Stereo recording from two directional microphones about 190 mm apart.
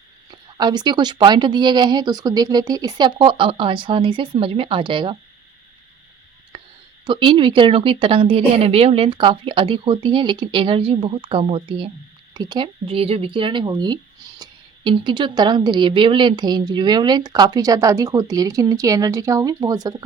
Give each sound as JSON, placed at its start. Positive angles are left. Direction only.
{"t": 0.3, "sound": "speech", "side_deg": -25}
{"t": 6.5, "sound": "a sound", "side_deg": -25}
{"t": 7.0, "sound": "speech", "side_deg": -25}